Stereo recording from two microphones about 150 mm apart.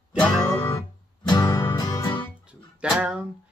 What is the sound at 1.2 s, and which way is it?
Music, 30° left (ahead or behind).